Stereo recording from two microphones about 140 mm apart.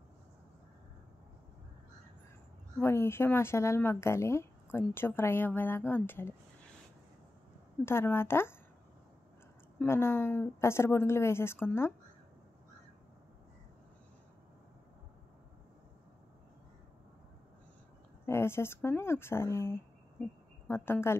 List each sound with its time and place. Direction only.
2.8 s speech: 15° left (ahead or behind)
7.8 s speech: 15° left (ahead or behind)
9.8 s speech: 15° left (ahead or behind)
18.2 s speech: 15° left (ahead or behind)